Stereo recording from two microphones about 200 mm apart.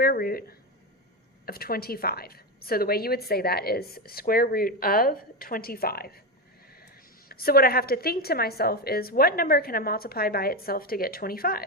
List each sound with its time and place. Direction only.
0.0 s a woman's voice: 50° left (ahead or behind)
7.3 s a woman's voice: 50° left (ahead or behind)